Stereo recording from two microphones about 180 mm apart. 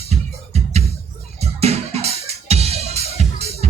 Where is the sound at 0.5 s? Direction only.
35° right (ahead or behind).